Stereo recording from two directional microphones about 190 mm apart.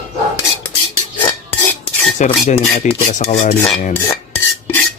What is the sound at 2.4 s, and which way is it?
Speech, 35° left (ahead or behind).